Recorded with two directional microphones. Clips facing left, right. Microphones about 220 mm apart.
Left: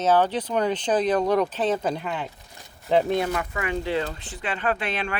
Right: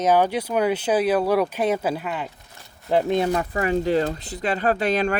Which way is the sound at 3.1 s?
30° right (ahead or behind).